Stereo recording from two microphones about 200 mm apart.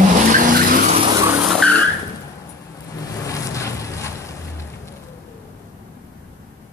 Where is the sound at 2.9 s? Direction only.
15° left (ahead or behind).